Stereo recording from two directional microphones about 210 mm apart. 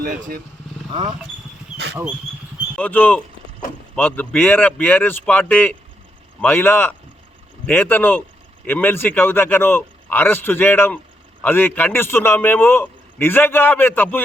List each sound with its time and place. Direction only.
0.0 s speech: 45° right (ahead or behind)
2.7 s a man's voice: 5° left (ahead or behind)